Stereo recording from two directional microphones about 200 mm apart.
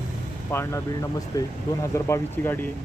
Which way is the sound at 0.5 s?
15° left (ahead or behind).